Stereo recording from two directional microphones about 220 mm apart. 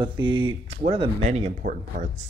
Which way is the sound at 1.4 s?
35° right (ahead or behind).